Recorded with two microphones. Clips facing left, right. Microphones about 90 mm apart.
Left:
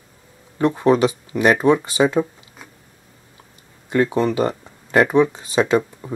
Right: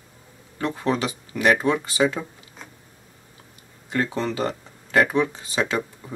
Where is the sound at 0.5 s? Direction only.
20° left (ahead or behind).